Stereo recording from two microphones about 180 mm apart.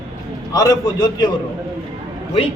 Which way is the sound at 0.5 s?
20° left (ahead or behind).